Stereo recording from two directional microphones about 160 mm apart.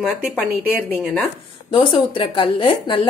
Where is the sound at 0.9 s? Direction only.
Centre (ahead or behind).